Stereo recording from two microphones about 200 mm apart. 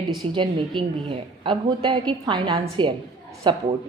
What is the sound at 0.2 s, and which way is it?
A woman's voice, 25° right (ahead or behind).